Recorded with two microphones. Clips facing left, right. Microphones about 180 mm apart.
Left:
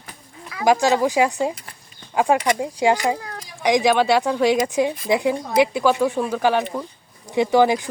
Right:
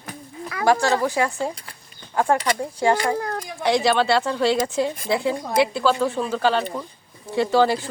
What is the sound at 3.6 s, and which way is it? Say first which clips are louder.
A man's voice: left 2 dB; 15° left (ahead or behind).